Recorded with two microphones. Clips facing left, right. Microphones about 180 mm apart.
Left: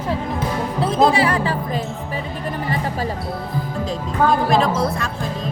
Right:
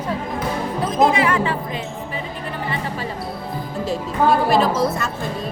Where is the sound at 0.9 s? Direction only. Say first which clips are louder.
Even; 30° left (ahead or behind).